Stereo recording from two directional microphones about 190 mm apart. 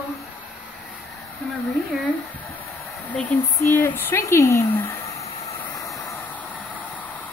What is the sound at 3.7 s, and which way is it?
Speech, 10° left (ahead or behind).